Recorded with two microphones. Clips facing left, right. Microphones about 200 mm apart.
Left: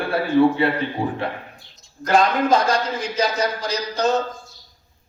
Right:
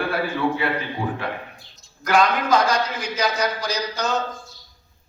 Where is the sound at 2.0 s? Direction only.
30° left (ahead or behind).